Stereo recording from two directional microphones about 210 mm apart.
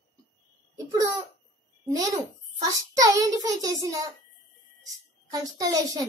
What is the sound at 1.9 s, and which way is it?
A child's voice, 15° right (ahead or behind).